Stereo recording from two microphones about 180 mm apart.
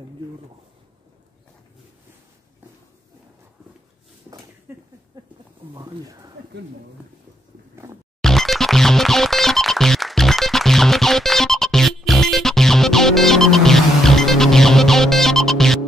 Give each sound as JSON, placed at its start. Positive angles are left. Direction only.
{"t": 4.7, "sound": "a sound", "side_deg": -10}
{"t": 5.8, "sound": "speech", "side_deg": -20}
{"t": 8.2, "sound": "music", "side_deg": 0}